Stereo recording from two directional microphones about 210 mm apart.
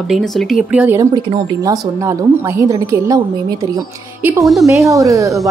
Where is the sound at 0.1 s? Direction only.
Centre (ahead or behind).